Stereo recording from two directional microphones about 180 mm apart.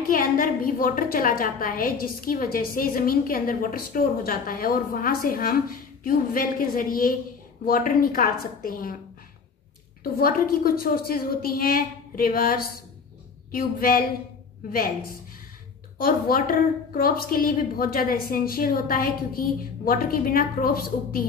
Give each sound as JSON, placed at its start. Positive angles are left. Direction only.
{"t": 0.1, "sound": "a woman's voice", "side_deg": 50}
{"t": 10.1, "sound": "a woman's voice", "side_deg": 55}